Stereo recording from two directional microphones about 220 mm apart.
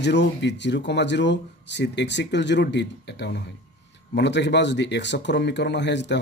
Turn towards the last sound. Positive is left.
turn(degrees=50)  # may be behind; listen again after turning